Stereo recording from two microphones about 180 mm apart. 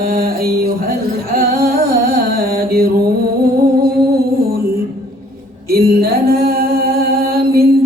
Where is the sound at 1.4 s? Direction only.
55° right (ahead or behind).